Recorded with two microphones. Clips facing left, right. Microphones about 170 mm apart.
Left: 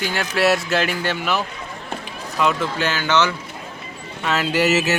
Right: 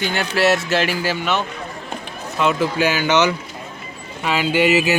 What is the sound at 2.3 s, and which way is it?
Speech, 5° right (ahead or behind).